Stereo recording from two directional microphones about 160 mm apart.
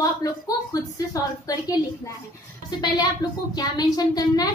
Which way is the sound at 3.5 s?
25° left (ahead or behind).